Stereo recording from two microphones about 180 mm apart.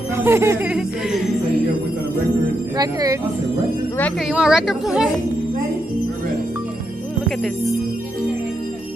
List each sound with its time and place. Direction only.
0.1 s speech: 15° right (ahead or behind)
2.8 s speech: 20° right (ahead or behind)
4.2 s a woman's voice: 5° right (ahead or behind)